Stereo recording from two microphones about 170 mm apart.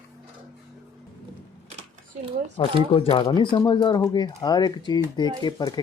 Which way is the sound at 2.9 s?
30° left (ahead or behind).